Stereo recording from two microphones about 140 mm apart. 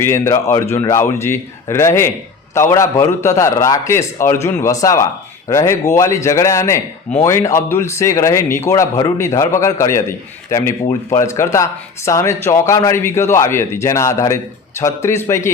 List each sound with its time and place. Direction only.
0.0 s speech: 20° left (ahead or behind)
11.1 s speech: 20° left (ahead or behind)